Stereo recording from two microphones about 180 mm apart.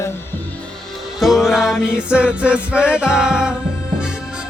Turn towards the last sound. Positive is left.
turn(degrees=-5)  # may be behind; listen again after turning